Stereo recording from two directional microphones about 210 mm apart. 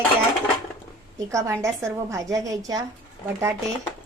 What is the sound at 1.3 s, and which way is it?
A woman's voice, 15° right (ahead or behind).